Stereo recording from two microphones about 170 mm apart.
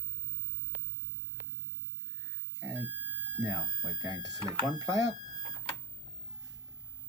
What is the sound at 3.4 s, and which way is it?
Speech, 20° right (ahead or behind).